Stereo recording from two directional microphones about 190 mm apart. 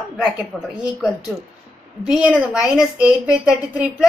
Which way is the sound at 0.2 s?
5° right (ahead or behind).